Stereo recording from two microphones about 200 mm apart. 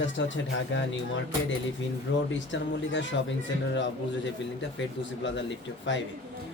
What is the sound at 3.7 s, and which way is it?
A man's voice, 65° left (ahead or behind).